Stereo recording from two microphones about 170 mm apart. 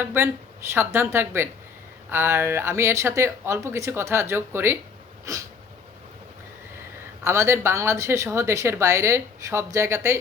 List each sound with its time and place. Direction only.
0.0 s a woman's voice: 15° right (ahead or behind)
7.3 s a woman's voice: 15° right (ahead or behind)